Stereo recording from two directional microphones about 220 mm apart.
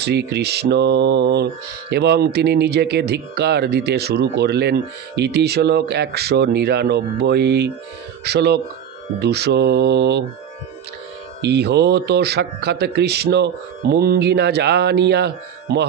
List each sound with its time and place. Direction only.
0.0 s music: 50° right (ahead or behind)
11.4 s music: 50° right (ahead or behind)